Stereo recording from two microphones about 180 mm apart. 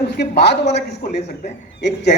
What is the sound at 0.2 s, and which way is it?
Speech, 70° left (ahead or behind).